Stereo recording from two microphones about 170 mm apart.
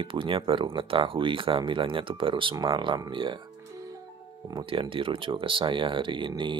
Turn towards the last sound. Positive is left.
turn(degrees=-30)  # may be behind; listen again after turning